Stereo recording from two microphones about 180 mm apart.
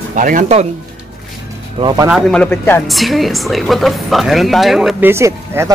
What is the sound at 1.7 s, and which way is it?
Speech, 25° right (ahead or behind).